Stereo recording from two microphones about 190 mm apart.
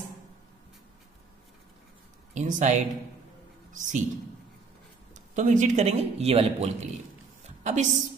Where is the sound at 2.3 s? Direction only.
40° right (ahead or behind).